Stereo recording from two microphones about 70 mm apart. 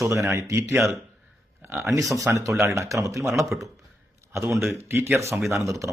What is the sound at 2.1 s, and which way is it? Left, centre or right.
Speech, right.